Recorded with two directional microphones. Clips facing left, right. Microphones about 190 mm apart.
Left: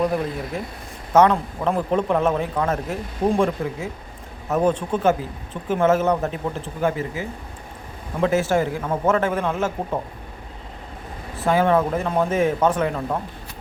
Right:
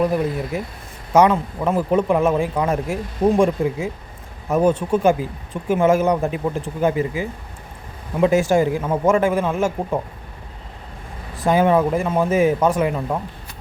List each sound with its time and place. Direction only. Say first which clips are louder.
0.0 s a man's voice: right 3 dB; 5° right (ahead or behind)
11.3 s a man's voice: right 2 dB; 15° right (ahead or behind)